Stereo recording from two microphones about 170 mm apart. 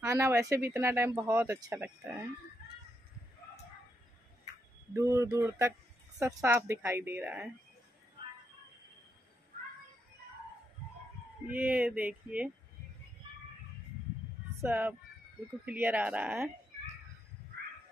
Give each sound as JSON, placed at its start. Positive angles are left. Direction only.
{"t": 0.0, "sound": "speech", "side_deg": -15}
{"t": 4.9, "sound": "speech", "side_deg": -15}
{"t": 11.4, "sound": "speech", "side_deg": -10}
{"t": 14.6, "sound": "speech", "side_deg": -10}